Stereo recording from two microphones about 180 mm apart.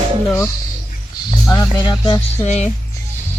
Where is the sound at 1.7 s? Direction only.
25° left (ahead or behind).